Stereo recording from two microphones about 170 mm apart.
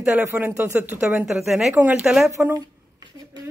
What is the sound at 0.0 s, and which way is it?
Speech, 10° right (ahead or behind).